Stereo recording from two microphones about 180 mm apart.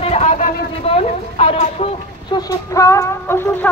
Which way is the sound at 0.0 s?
35° left (ahead or behind).